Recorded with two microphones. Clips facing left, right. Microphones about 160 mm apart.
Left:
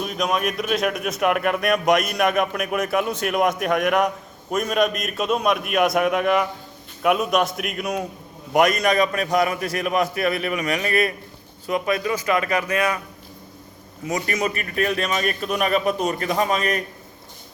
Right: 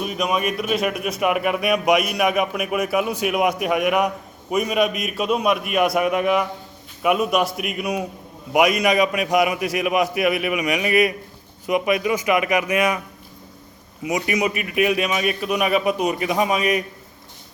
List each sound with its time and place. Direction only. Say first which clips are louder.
0.0 s a man's voice: right 1 dB; 5° right (ahead or behind)
14.0 s a man's voice: right 2 dB; 15° right (ahead or behind)